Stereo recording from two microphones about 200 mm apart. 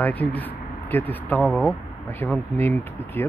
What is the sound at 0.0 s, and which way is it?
Speech, 10° left (ahead or behind).